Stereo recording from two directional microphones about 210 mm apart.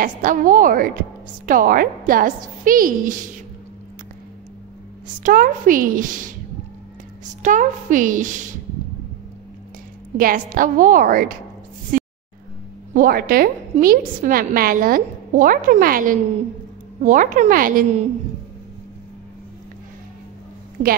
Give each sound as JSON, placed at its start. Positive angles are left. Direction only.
{"t": 0.0, "sound": "a woman's voice", "side_deg": -40}
{"t": 5.2, "sound": "a woman's voice", "side_deg": -40}
{"t": 7.4, "sound": "a woman's voice", "side_deg": -40}
{"t": 10.1, "sound": "a woman's voice", "side_deg": -40}
{"t": 11.9, "sound": "a sound", "side_deg": -40}
{"t": 12.9, "sound": "a woman's voice", "side_deg": -45}
{"t": 20.8, "sound": "a woman's voice", "side_deg": -35}